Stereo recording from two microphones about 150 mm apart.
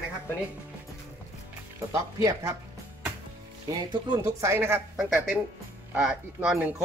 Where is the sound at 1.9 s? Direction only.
20° right (ahead or behind).